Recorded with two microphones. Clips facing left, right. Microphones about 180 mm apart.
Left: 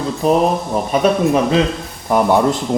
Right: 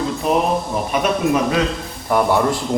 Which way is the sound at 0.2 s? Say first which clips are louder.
Left 4 dB; 35° left (ahead or behind).